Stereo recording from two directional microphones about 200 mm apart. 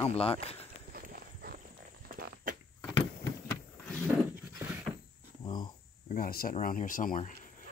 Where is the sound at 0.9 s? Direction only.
45° right (ahead or behind).